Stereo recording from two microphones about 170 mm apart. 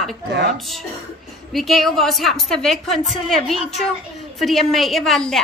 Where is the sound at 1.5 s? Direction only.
Centre (ahead or behind).